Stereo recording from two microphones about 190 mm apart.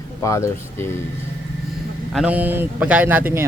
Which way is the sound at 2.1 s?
5° right (ahead or behind).